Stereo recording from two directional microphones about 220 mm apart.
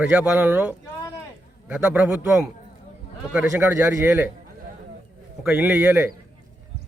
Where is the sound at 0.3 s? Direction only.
5° right (ahead or behind).